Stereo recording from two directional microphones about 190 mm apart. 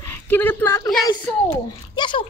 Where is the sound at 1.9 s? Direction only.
25° left (ahead or behind).